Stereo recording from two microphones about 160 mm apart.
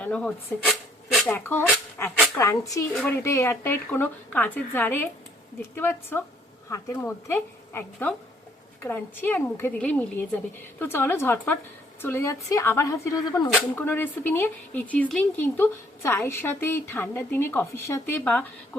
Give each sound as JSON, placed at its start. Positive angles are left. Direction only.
{"t": 0.0, "sound": "speech", "side_deg": 5}
{"t": 1.3, "sound": "speech", "side_deg": 15}
{"t": 2.1, "sound": "a sound", "side_deg": 0}
{"t": 2.4, "sound": "a woman's voice", "side_deg": 20}
{"t": 2.9, "sound": "speech", "side_deg": 5}
{"t": 3.2, "sound": "a woman's voice", "side_deg": 15}